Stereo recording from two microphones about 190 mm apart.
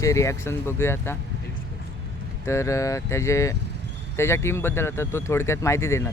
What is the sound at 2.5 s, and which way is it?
Speech, 15° left (ahead or behind).